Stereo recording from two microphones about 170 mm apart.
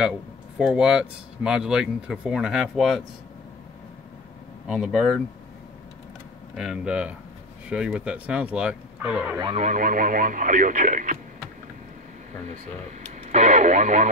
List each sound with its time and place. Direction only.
0.6 s speech: 5° right (ahead or behind)
4.6 s speech: 5° right (ahead or behind)
6.5 s speech: 5° right (ahead or behind)
9.6 s speech: 50° right (ahead or behind)
13.2 s speech: 40° right (ahead or behind)